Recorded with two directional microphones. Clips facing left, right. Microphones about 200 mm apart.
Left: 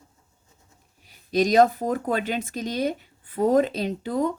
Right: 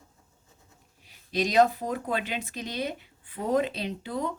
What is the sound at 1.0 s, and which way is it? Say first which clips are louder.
Speech: left 6 dB; 45° left (ahead or behind).